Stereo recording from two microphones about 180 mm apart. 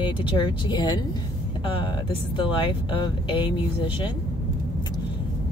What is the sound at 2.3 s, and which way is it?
Speech, 25° left (ahead or behind).